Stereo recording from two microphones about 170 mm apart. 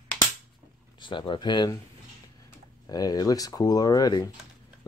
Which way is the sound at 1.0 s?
30° left (ahead or behind).